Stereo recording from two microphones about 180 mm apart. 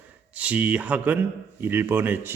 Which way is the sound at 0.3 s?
10° right (ahead or behind).